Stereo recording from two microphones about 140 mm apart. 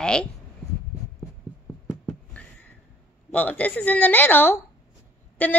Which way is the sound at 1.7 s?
Centre (ahead or behind).